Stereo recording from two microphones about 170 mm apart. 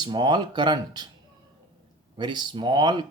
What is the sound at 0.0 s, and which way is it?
Speech, 25° right (ahead or behind).